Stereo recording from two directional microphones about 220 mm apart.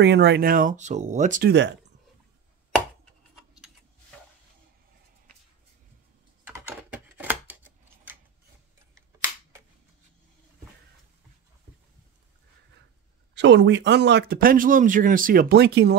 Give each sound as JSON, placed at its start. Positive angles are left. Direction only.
{"t": 0.0, "sound": "speech", "side_deg": -50}
{"t": 1.5, "sound": "speech", "side_deg": -55}
{"t": 6.4, "sound": "typing", "side_deg": -10}
{"t": 13.3, "sound": "speech", "side_deg": -55}